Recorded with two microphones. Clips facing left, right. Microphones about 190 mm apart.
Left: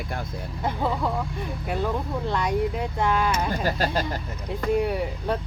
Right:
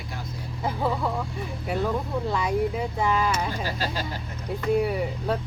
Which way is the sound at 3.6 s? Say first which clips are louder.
Left 5 dB; 50° left (ahead or behind).